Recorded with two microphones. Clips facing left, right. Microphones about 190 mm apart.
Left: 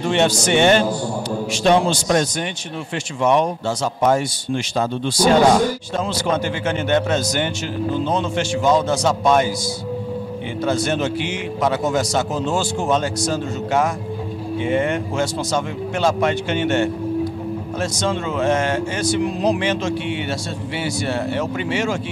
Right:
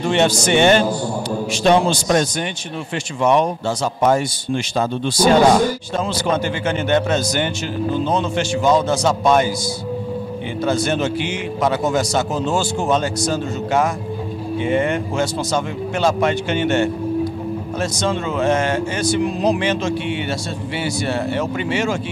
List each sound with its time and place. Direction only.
0.0 s speech: 10° right (ahead or behind)
3.3 s speech: 15° right (ahead or behind)
5.1 s speech: 5° right (ahead or behind)
8.6 s a man's voice: 35° right (ahead or behind)
10.9 s speech: 10° right (ahead or behind)
12.9 s speech: 15° right (ahead or behind)